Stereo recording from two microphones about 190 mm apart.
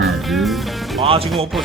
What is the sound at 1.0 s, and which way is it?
Speech, 30° right (ahead or behind).